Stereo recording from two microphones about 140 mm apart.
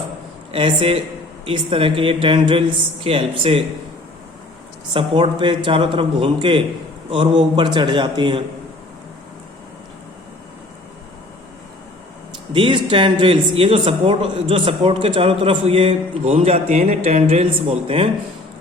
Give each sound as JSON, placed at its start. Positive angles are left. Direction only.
{"t": 0.5, "sound": "speech", "side_deg": -40}
{"t": 4.9, "sound": "speech", "side_deg": -40}
{"t": 12.5, "sound": "speech", "side_deg": -35}